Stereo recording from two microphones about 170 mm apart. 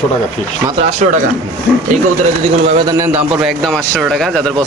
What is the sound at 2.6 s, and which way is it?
Speech, 25° right (ahead or behind).